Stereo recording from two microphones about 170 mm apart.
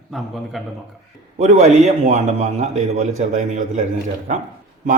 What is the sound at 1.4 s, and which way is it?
A man's voice, 40° right (ahead or behind).